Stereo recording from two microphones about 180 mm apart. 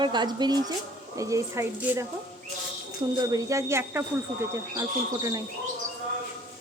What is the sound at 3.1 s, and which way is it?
Speech, 20° right (ahead or behind).